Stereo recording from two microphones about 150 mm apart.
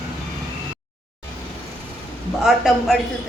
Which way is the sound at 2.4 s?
Centre (ahead or behind).